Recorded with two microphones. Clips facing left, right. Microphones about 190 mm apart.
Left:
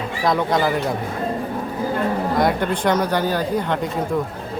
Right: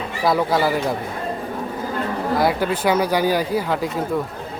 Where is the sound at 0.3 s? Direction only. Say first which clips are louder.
Right 1 dB; 5° right (ahead or behind).